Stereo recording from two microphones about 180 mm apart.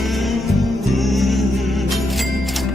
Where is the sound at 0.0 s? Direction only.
Centre (ahead or behind).